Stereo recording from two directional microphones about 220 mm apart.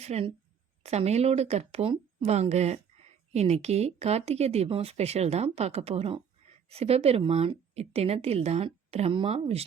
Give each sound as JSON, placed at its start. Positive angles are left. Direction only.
{"t": 0.0, "sound": "speech", "side_deg": -30}